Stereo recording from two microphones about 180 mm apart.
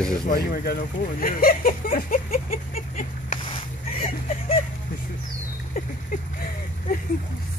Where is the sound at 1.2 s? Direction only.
55° left (ahead or behind).